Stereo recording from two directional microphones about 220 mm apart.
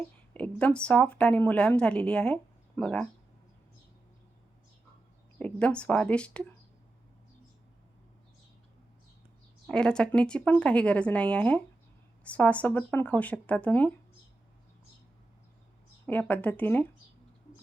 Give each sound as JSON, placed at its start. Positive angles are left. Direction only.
{"t": 0.3, "sound": "speech", "side_deg": 5}
{"t": 5.4, "sound": "speech", "side_deg": 5}
{"t": 9.6, "sound": "speech", "side_deg": 5}
{"t": 16.0, "sound": "speech", "side_deg": 5}